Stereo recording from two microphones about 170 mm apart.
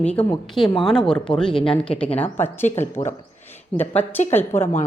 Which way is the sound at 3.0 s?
35° left (ahead or behind).